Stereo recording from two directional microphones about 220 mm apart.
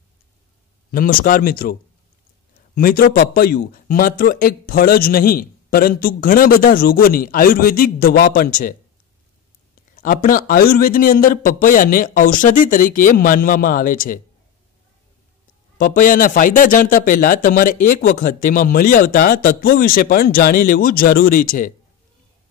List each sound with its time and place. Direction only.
0.9 s speech: 40° left (ahead or behind)
9.9 s speech: 40° left (ahead or behind)
15.8 s speech: 40° left (ahead or behind)